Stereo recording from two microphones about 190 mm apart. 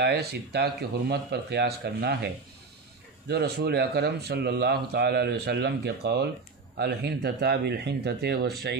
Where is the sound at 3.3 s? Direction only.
55° right (ahead or behind).